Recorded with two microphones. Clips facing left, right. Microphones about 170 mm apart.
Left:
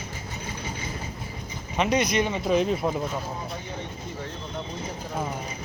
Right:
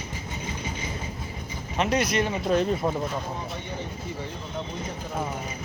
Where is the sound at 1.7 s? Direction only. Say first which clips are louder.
Left 1 dB; centre (ahead or behind).